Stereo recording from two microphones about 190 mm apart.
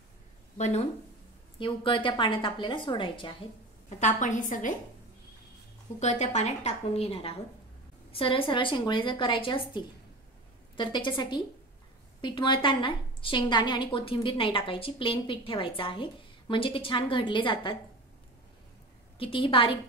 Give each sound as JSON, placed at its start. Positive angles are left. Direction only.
{"t": 0.6, "sound": "a woman's voice", "side_deg": 35}
{"t": 4.0, "sound": "a woman's voice", "side_deg": 45}
{"t": 5.9, "sound": "a woman's voice", "side_deg": 35}
{"t": 19.1, "sound": "a woman's voice", "side_deg": 30}